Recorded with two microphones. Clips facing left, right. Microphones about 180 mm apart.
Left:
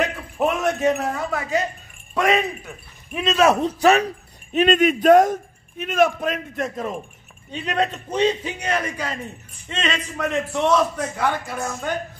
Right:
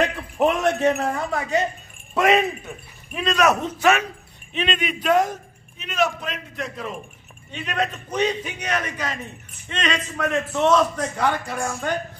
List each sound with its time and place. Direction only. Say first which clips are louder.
0.4 s a man's voice: right 1 dB; 5° left (ahead or behind)
3.2 s speech: left 2 dB; 25° left (ahead or behind); by 7.0 s 45° left (ahead or behind)
7.5 s a man's voice: left 3 dB; 30° left (ahead or behind)
10.5 s a man's voice: right 1 dB; 10° left (ahead or behind)